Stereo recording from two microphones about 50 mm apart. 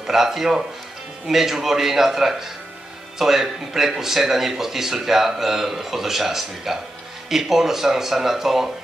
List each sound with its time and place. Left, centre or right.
0.0 s speech: centre